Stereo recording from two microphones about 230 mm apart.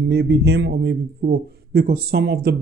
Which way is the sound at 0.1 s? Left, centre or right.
Right.